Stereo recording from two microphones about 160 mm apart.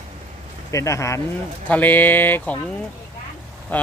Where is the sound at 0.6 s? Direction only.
20° left (ahead or behind).